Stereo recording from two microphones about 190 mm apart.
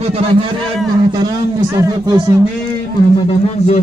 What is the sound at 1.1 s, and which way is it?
A man's voice, 20° right (ahead or behind).